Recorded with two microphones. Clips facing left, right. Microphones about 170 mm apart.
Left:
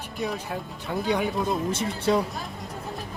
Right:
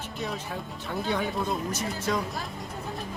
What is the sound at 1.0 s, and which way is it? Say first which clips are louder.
Speech: left 4 dB; 15° left (ahead or behind).